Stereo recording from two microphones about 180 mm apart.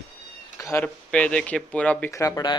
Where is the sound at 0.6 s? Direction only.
15° left (ahead or behind).